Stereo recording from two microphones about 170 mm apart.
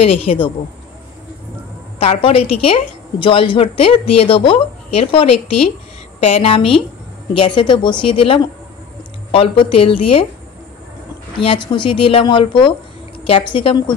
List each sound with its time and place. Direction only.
0.0 s a woman's voice: 35° left (ahead or behind)
2.0 s a woman's voice: 35° left (ahead or behind)
11.3 s speech: 30° left (ahead or behind)